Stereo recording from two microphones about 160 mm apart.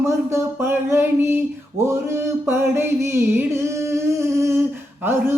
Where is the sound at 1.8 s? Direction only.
15° right (ahead or behind).